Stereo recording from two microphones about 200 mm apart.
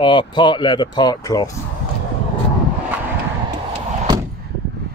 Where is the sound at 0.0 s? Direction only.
25° left (ahead or behind).